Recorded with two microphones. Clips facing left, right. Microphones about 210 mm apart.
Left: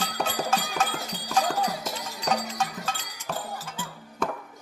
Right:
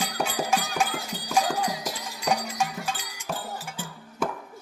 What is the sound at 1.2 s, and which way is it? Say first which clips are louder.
Clip-clop: even; 10° right (ahead or behind).